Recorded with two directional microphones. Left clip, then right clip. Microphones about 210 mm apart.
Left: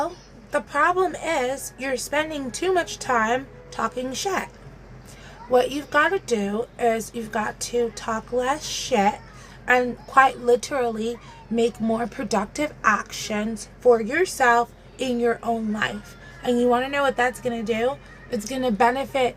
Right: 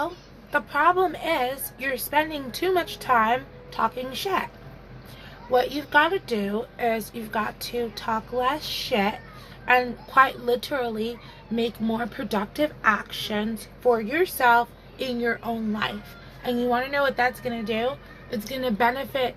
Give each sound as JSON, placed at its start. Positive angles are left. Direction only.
{"t": 0.5, "sound": "a woman's voice", "side_deg": 25}
{"t": 5.5, "sound": "a woman's voice", "side_deg": 25}